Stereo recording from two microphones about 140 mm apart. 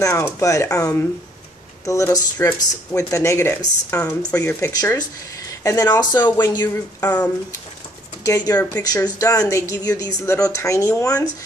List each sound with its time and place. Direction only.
0.0 s speech: 20° left (ahead or behind)
8.2 s speech: 25° left (ahead or behind)